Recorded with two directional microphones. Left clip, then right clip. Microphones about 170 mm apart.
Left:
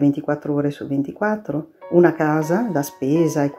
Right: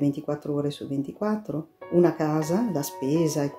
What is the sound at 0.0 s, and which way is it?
Speech, 10° right (ahead or behind).